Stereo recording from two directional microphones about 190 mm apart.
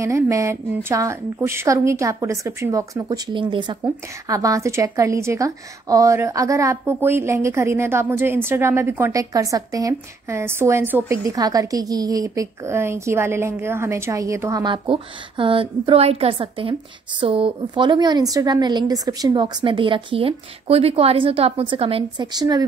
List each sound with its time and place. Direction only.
0.0 s a woman's voice: 15° right (ahead or behind)